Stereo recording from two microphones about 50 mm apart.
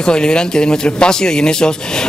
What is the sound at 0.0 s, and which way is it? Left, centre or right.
Speech, centre.